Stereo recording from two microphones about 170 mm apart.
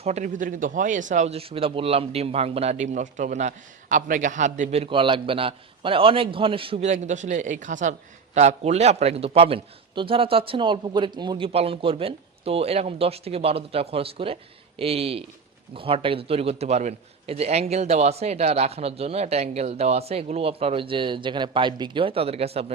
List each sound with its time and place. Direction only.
0.0 s a man's voice: 45° right (ahead or behind)